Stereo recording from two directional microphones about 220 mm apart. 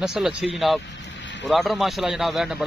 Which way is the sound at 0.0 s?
5° right (ahead or behind).